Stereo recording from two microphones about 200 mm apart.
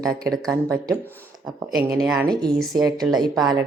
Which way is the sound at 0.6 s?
15° right (ahead or behind).